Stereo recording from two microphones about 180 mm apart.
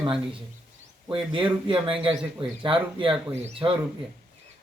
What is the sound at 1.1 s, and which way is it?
Speech, 30° right (ahead or behind).